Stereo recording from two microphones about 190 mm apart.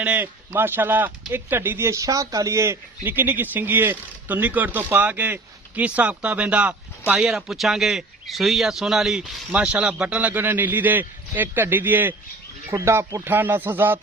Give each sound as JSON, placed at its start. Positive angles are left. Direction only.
{"t": 0.0, "sound": "speech", "side_deg": -10}